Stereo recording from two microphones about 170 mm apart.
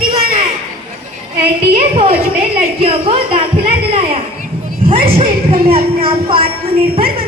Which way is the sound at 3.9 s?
35° right (ahead or behind).